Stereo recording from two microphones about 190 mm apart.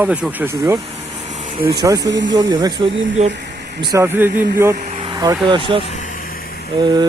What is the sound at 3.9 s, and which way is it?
Speech, 10° right (ahead or behind).